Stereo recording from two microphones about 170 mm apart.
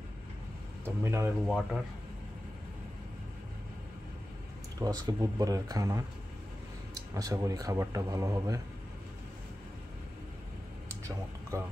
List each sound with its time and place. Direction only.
0.8 s speech: 15° right (ahead or behind)
1.4 s speech: centre (ahead or behind)
4.7 s speech: 20° right (ahead or behind)